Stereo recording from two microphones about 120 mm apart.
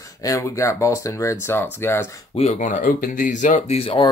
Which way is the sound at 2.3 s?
70° left (ahead or behind).